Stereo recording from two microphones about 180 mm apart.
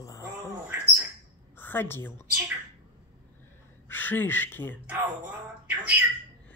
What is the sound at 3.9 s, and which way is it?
Speech, 10° left (ahead or behind).